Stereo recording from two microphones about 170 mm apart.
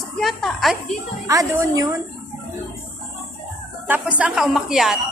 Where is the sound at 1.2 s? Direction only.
20° right (ahead or behind).